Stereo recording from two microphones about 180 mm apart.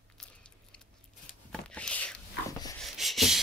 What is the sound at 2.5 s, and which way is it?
Dog, 20° left (ahead or behind).